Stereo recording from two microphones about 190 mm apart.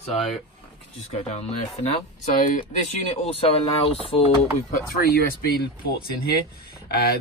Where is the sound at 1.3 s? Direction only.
35° left (ahead or behind).